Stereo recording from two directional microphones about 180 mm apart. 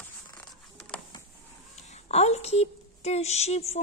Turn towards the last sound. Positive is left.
turn(degrees=35)  # may be behind; listen again after turning